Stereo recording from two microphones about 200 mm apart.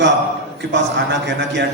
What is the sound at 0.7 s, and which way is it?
Speech, 60° right (ahead or behind).